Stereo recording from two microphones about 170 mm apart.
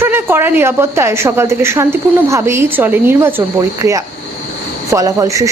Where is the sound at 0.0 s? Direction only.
15° right (ahead or behind).